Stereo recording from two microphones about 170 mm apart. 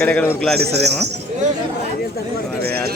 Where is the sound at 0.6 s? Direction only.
75° right (ahead or behind).